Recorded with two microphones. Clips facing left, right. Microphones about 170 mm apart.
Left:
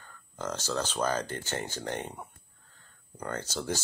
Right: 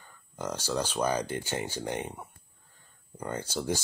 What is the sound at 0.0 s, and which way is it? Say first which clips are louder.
Speech: right 1 dB; 10° right (ahead or behind).